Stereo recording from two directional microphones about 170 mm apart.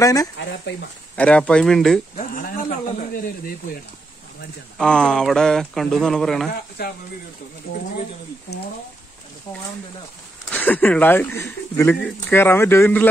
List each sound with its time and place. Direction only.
0.0 s speech: 20° left (ahead or behind)
0.4 s speech: 90° left
1.1 s speech: 5° left (ahead or behind)
2.1 s a sound: 55° left (ahead or behind)
4.7 s speech: 5° left (ahead or behind)
6.8 s speech: 65° left (ahead or behind)
10.5 s speech: 10° left (ahead or behind)